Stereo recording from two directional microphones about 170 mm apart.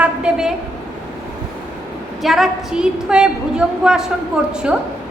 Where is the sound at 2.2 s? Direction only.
Centre (ahead or behind).